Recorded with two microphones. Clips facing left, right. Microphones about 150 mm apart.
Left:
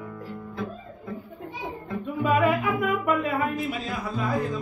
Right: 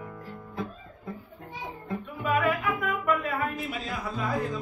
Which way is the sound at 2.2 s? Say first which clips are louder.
Left 4 dB; 20° left (ahead or behind).